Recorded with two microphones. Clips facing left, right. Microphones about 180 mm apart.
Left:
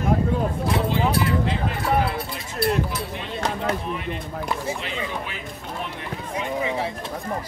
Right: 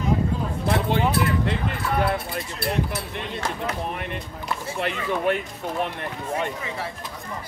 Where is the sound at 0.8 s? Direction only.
60° right (ahead or behind).